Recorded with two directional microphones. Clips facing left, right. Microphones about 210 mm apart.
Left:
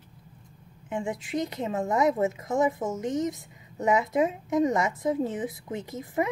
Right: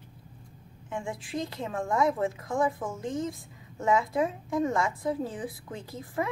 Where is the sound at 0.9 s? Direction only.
20° left (ahead or behind).